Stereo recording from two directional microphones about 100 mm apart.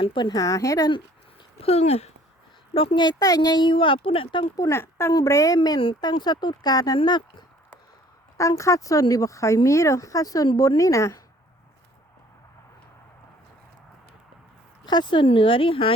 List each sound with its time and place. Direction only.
0.0 s speech: 55° left (ahead or behind)
0.3 s speech: 30° left (ahead or behind)
1.5 s speech: 90° left
2.7 s speech: 65° left (ahead or behind)
3.0 s speech: 40° left (ahead or behind); by 4.4 s 60° left (ahead or behind)
4.5 s speech: 35° left (ahead or behind)
4.8 s a woman's voice: 25° left (ahead or behind)
5.1 s speech: 35° left (ahead or behind)
6.0 s speech: 45° left (ahead or behind)
8.4 s speech: 30° left (ahead or behind)
14.8 s speech: 45° left (ahead or behind); by 15.9 s 65° left (ahead or behind)